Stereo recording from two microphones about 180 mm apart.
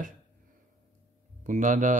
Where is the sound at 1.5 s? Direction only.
45° right (ahead or behind).